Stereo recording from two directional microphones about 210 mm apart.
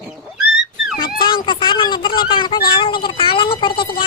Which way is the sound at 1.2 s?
20° left (ahead or behind).